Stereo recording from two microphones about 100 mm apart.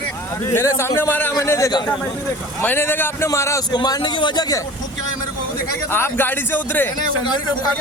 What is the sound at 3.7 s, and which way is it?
Speech, 40° left (ahead or behind).